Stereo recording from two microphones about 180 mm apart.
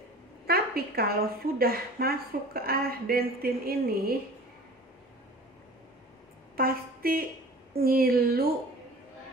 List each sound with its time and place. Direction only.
0.5 s a woman's voice: 55° right (ahead or behind)
6.5 s a sound: 55° right (ahead or behind)
7.7 s a woman's voice: 55° right (ahead or behind)